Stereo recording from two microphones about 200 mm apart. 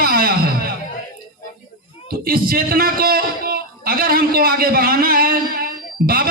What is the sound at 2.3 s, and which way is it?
A man's voice, 50° right (ahead or behind).